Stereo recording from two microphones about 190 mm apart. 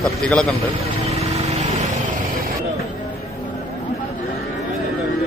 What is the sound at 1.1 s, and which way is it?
Vehicle, 35° right (ahead or behind).